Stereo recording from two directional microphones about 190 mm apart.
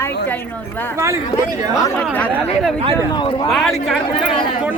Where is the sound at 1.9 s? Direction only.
5° left (ahead or behind).